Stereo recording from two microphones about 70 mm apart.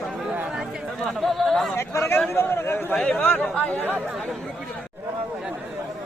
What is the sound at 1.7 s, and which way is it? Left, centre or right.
Chatter, left.